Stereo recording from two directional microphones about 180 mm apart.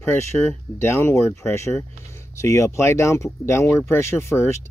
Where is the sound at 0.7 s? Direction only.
15° left (ahead or behind).